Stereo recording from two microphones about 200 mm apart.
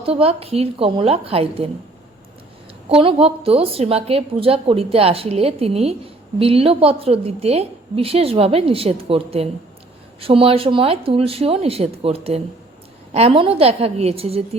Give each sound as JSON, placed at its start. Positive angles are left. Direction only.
{"t": 0.0, "sound": "a woman's voice", "side_deg": -30}
{"t": 2.9, "sound": "a woman's voice", "side_deg": -25}